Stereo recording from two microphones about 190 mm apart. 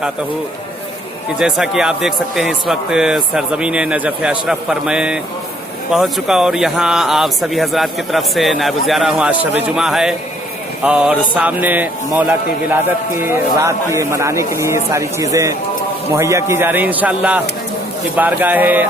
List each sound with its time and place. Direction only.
1.4 s speech: 5° right (ahead or behind)
13.2 s speech: 15° right (ahead or behind)